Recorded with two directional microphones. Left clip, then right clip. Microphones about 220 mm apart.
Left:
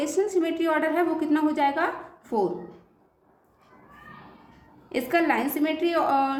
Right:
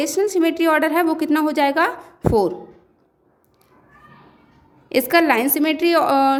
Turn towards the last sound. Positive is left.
turn(degrees=-50)  # may be behind; listen again after turning